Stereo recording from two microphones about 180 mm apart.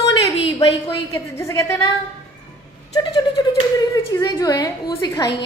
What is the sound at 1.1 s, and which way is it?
Speech, 15° left (ahead or behind).